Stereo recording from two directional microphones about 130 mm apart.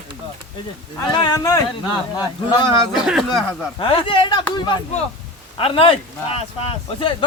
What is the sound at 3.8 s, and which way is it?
Speech, 40° left (ahead or behind).